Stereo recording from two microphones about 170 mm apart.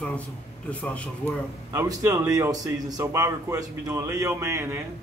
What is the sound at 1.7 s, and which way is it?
A man's voice, 15° right (ahead or behind).